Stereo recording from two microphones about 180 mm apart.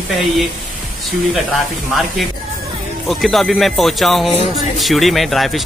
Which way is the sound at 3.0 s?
Centre (ahead or behind).